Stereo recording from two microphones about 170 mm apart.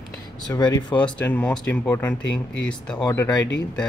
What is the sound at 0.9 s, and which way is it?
Speech, 10° left (ahead or behind).